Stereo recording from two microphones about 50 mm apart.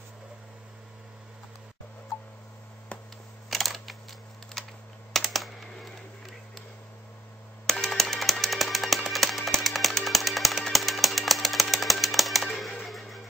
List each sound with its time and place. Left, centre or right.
3.4 s a sound: centre
4.6 s computer keyboard: centre
7.6 s music: centre